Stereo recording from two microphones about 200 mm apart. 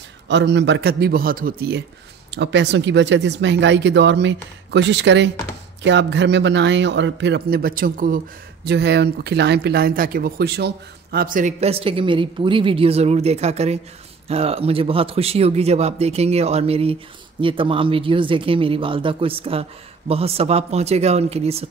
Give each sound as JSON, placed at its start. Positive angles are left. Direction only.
{"t": 0.3, "sound": "speech", "side_deg": -60}
{"t": 2.3, "sound": "speech", "side_deg": -60}
{"t": 8.6, "sound": "speech", "side_deg": -55}